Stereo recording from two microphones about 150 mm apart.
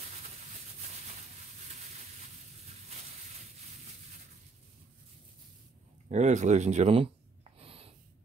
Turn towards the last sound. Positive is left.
turn(degrees=-40)  # may be behind; listen again after turning